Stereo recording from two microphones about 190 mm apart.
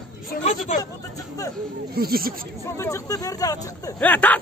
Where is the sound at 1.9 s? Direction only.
50° right (ahead or behind).